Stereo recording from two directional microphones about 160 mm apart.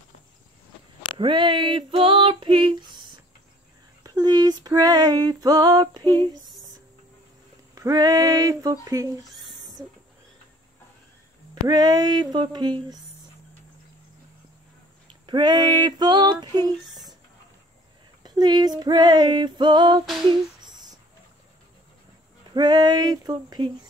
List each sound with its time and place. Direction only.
1.1 s female singing: 30° right (ahead or behind)
7.7 s female singing: 20° right (ahead or behind)
9.3 s rodents: centre (ahead or behind)
9.8 s a sound: 20° right (ahead or behind)
11.6 s female singing: 25° right (ahead or behind)
15.2 s female singing: 25° right (ahead or behind)
18.2 s female singing: 25° right (ahead or behind)
20.2 s a sound: 25° right (ahead or behind)
22.5 s female singing: 25° right (ahead or behind)